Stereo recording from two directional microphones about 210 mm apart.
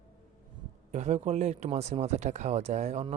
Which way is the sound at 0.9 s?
35° right (ahead or behind).